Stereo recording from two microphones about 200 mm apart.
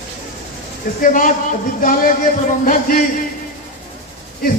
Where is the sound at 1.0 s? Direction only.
40° left (ahead or behind).